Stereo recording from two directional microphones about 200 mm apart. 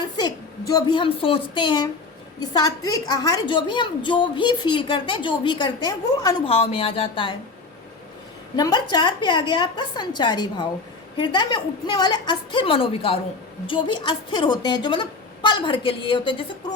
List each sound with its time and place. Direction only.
0.0 s a woman's voice: 20° left (ahead or behind)
8.5 s a woman's voice: 20° left (ahead or behind)